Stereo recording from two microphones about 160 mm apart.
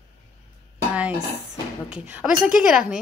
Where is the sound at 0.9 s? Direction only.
10° right (ahead or behind).